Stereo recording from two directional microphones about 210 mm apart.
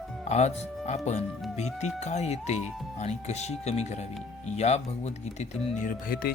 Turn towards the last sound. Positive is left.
turn(degrees=40)  # may be behind; listen again after turning